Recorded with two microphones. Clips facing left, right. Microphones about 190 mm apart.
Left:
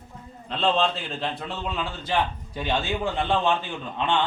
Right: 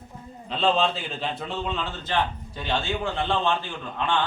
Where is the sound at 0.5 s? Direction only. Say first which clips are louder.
Even; centre (ahead or behind); by 3.5 s 15° left (ahead or behind).